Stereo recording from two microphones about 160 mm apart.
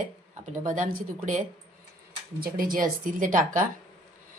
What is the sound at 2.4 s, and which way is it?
Speech, 60° right (ahead or behind).